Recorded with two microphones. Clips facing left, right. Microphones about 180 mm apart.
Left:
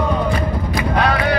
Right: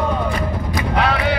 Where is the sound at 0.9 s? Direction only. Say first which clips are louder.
Left 1 dB; 5° right (ahead or behind).